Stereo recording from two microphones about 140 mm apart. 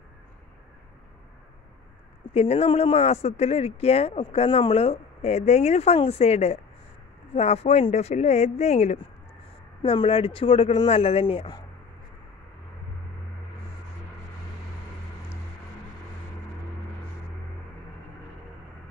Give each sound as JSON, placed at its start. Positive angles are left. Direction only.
{"t": 2.3, "sound": "speech", "side_deg": 45}